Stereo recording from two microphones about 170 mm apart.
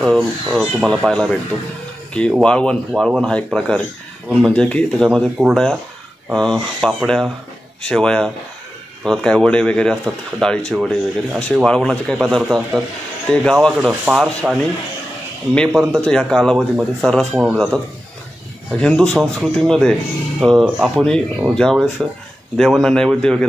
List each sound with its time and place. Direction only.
0.0 s speech: centre (ahead or behind)
2.4 s speech: 5° left (ahead or behind)